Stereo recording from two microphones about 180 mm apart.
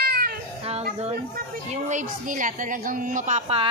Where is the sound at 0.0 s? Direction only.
55° right (ahead or behind).